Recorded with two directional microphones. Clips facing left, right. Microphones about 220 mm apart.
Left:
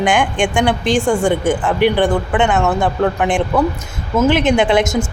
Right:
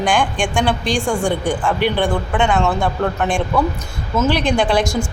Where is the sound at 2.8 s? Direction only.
15° left (ahead or behind).